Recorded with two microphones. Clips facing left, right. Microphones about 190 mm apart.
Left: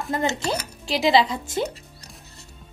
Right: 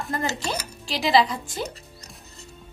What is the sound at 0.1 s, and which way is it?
Speech, 25° left (ahead or behind).